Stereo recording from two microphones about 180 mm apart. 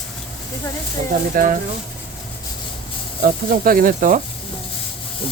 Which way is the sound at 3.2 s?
55° right (ahead or behind).